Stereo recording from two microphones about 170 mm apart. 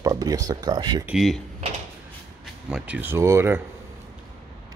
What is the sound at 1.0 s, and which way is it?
Speech, centre (ahead or behind).